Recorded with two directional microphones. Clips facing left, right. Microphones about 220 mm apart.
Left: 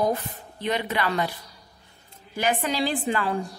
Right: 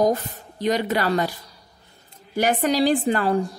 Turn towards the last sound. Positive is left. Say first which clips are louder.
# right 6 dB
turn(degrees=-40)  # may be behind; listen again after turning